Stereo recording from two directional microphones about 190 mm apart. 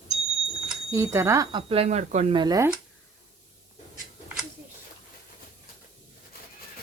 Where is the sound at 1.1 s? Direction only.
15° right (ahead or behind).